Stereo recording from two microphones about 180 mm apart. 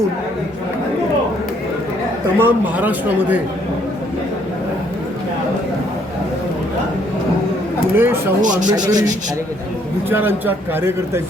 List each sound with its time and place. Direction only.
2.4 s speech: 10° right (ahead or behind)
7.9 s speech: 10° right (ahead or behind)
8.4 s speech: 45° right (ahead or behind)
8.7 s speech: 20° right (ahead or behind)
10.1 s speech: 10° right (ahead or behind)